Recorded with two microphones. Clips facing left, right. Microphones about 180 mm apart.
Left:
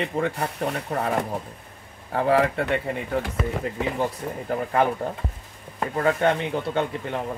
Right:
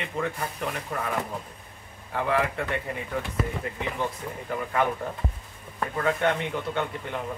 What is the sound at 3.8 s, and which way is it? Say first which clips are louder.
Speech: left 5 dB; 40° left (ahead or behind).